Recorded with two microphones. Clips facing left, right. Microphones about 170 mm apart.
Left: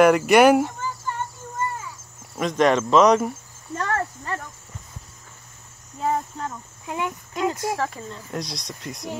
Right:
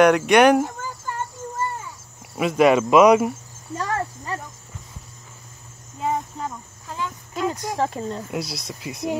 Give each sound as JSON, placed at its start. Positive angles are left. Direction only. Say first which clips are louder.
{"t": 0.0, "sound": "speech", "louder": "even", "side_deg": 5}
{"t": 2.3, "sound": "cricket", "louder": "right 3 dB", "side_deg": -5}
{"t": 5.9, "sound": "cricket", "louder": "left 1 dB", "side_deg": -10}
{"t": 6.9, "sound": "speech", "louder": "left 3 dB", "side_deg": 20}
{"t": 7.5, "sound": "speech", "louder": "right 1 dB", "side_deg": -20}
{"t": 8.3, "sound": "speech", "louder": "right 2 dB", "side_deg": -5}